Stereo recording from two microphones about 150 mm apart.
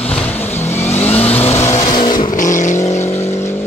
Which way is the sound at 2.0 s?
30° left (ahead or behind).